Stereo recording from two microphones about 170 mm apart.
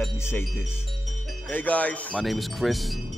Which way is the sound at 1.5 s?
10° left (ahead or behind).